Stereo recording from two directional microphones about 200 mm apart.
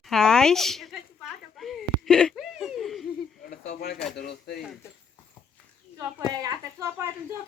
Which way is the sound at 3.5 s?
40° left (ahead or behind).